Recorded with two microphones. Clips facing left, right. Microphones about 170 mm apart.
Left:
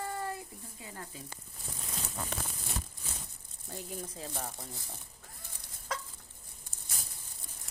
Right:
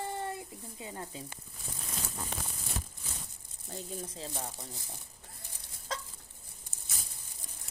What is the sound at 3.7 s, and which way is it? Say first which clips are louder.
Speech: right 1 dB; 25° right (ahead or behind).